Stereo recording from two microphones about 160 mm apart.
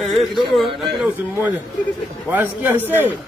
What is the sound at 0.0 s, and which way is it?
Speech, centre (ahead or behind).